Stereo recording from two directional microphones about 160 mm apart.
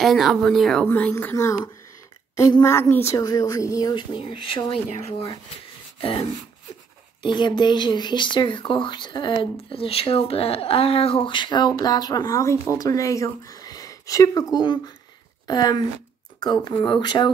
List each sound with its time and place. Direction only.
0.0 s speech: centre (ahead or behind); by 4.7 s 30° left (ahead or behind)
5.9 s beatboxing: 35° left (ahead or behind)
7.2 s speech: 30° left (ahead or behind)